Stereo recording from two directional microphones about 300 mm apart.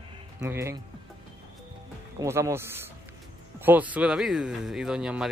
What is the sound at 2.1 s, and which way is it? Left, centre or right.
Speech, centre.